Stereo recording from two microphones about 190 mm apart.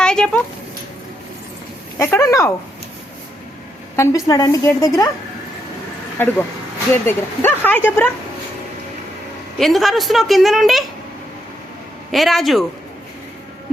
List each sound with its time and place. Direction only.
0.0 s a sound: 5° left (ahead or behind)
2.0 s a woman's voice: 15° left (ahead or behind)
3.9 s a woman's voice: 15° left (ahead or behind)
6.2 s a woman's voice: 10° left (ahead or behind)
9.6 s a woman's voice: centre (ahead or behind)
12.1 s a woman's voice: centre (ahead or behind)